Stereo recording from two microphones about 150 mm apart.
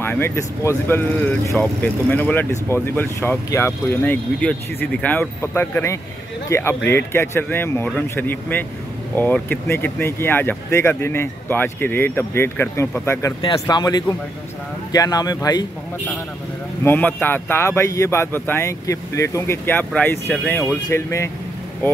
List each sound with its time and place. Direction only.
0.0 s speech: 15° left (ahead or behind)
13.4 s speech: 30° left (ahead or behind)
16.8 s speech: 10° left (ahead or behind)